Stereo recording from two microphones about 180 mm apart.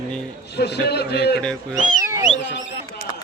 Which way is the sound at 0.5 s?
65° left (ahead or behind).